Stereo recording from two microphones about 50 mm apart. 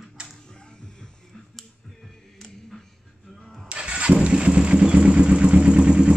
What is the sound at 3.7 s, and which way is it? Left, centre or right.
Vehicle, right.